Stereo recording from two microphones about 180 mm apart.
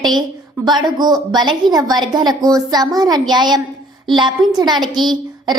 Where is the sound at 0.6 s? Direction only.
25° right (ahead or behind).